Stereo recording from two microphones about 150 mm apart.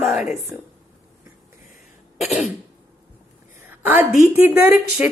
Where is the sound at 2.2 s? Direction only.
Centre (ahead or behind).